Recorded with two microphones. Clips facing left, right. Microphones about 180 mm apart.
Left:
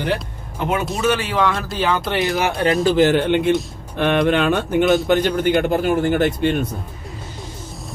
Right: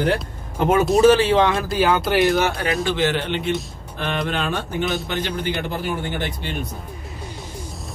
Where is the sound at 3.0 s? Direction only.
50° left (ahead or behind).